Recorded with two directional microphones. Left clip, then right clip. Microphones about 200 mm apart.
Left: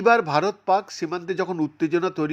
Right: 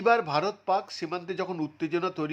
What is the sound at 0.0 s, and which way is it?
A man's voice, 15° left (ahead or behind).